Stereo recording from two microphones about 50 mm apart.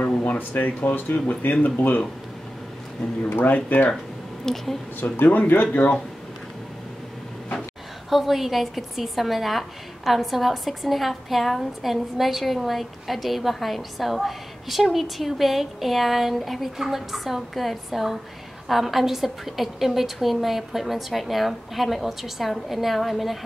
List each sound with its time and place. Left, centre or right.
0.2 s speech: left
3.3 s speech: left
4.5 s a woman's voice: centre
5.1 s speech: left
8.1 s a woman's voice: centre